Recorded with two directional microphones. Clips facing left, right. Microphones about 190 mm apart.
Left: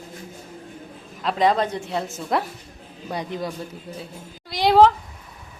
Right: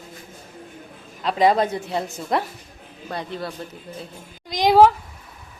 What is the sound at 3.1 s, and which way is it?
Speech, 15° left (ahead or behind).